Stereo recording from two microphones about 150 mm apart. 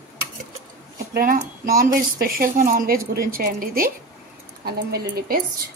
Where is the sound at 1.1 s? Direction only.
70° right (ahead or behind).